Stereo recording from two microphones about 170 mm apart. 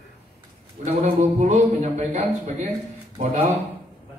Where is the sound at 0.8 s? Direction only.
40° right (ahead or behind).